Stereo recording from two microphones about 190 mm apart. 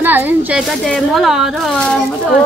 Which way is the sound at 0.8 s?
Centre (ahead or behind).